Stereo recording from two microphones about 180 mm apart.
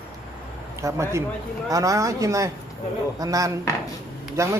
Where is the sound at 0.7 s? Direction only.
15° right (ahead or behind).